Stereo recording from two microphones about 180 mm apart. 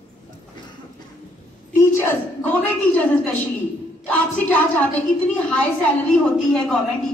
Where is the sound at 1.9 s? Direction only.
10° left (ahead or behind).